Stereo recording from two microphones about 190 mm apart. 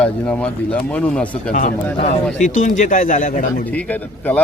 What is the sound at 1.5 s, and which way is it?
A man's voice, 40° left (ahead or behind).